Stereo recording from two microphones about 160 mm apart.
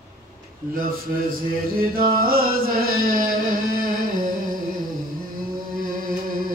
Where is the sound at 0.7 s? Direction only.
65° right (ahead or behind).